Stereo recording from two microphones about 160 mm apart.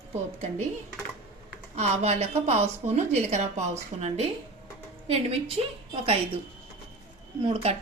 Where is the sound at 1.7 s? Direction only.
45° right (ahead or behind).